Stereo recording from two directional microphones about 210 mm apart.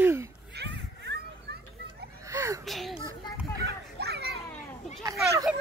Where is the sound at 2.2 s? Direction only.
15° right (ahead or behind).